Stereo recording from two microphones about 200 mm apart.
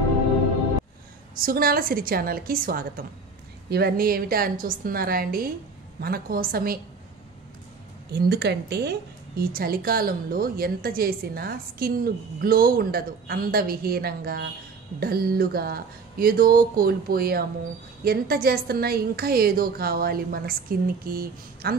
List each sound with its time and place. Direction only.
1.3 s a woman's voice: 45° right (ahead or behind)
8.1 s a woman's voice: 55° right (ahead or behind)